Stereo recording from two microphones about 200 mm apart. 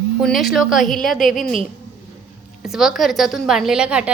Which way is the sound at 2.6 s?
Centre (ahead or behind).